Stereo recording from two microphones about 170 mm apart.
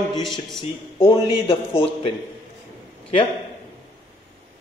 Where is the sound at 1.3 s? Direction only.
35° left (ahead or behind).